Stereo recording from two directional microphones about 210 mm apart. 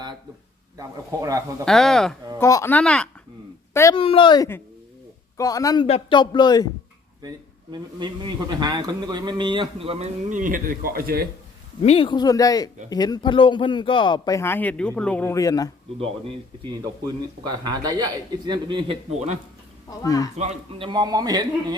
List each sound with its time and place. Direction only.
0.8 s speech: 15° right (ahead or behind)
1.6 s speech: centre (ahead or behind)
2.4 s speech: 15° left (ahead or behind)
3.9 s speech: 25° left (ahead or behind)
7.2 s speech: 20° right (ahead or behind); by 11.3 s 45° right (ahead or behind)
11.8 s speech: 30° left (ahead or behind)
16.0 s speech: 25° right (ahead or behind)
20.0 s speech: 15° left (ahead or behind)
20.3 s speech: 30° right (ahead or behind)